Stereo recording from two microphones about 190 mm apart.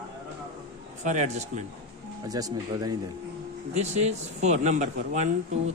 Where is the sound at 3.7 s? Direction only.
35° right (ahead or behind).